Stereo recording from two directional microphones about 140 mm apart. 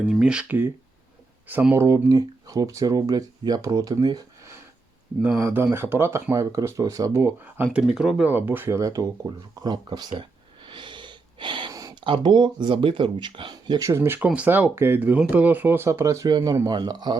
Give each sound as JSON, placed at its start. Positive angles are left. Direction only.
{"t": 0.0, "sound": "speech", "side_deg": -5}
{"t": 5.4, "sound": "speech", "side_deg": -15}